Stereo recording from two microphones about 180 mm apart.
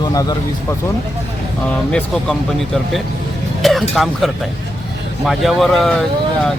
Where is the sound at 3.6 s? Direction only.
Centre (ahead or behind).